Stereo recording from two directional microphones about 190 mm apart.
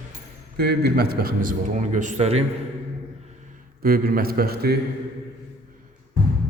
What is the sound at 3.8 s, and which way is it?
A man's voice, 50° right (ahead or behind).